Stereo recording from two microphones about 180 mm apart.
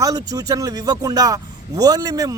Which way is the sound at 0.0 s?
20° right (ahead or behind).